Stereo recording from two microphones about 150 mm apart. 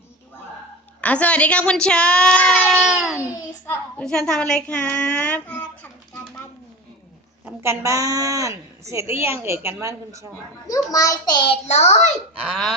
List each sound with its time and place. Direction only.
1.0 s a woman's voice: 10° left (ahead or behind)
7.4 s a woman's voice: 15° right (ahead or behind)
10.9 s child singing: 25° left (ahead or behind)
11.7 s a child's voice: 45° left (ahead or behind)
12.4 s speech: 5° right (ahead or behind)